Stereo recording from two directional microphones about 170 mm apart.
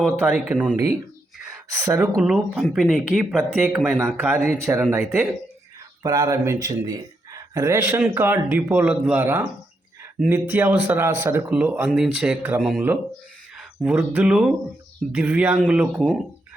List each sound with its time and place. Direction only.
0.3 s speech: 5° right (ahead or behind)
1.5 s a sound: 20° right (ahead or behind)
2.1 s speech: centre (ahead or behind)